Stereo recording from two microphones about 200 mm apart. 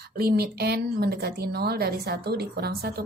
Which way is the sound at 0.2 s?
50° right (ahead or behind).